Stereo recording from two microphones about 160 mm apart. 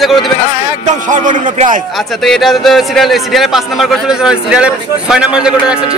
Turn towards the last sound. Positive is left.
turn(degrees=-5)  # may be behind; listen again after turning